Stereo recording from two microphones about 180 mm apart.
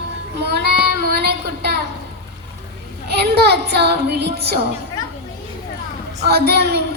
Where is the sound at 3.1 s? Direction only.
65° right (ahead or behind).